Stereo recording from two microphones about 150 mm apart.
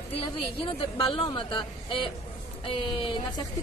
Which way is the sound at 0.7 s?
35° left (ahead or behind).